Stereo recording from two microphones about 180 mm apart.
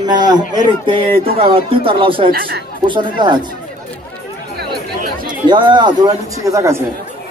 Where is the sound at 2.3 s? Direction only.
55° right (ahead or behind).